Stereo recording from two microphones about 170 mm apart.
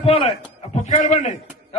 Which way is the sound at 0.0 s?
35° left (ahead or behind).